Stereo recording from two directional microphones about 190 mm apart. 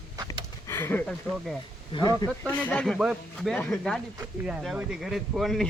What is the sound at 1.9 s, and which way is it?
Speech, 20° left (ahead or behind).